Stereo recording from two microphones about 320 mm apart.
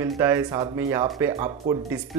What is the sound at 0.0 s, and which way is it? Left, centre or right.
Speech, centre.